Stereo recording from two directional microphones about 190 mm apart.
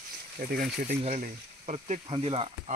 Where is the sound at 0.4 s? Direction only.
50° right (ahead or behind).